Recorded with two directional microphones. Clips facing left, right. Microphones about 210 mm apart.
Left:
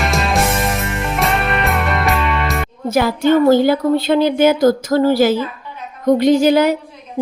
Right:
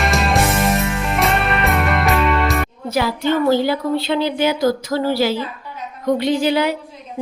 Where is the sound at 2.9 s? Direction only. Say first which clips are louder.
Left 5 dB; 50° left (ahead or behind).